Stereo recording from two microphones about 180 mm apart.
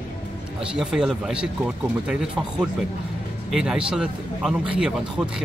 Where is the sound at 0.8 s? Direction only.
5° right (ahead or behind).